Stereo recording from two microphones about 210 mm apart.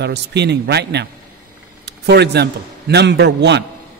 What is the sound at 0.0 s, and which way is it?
A man's voice, 55° right (ahead or behind).